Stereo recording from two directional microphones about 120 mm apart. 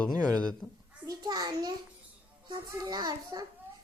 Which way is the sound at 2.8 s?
35° right (ahead or behind).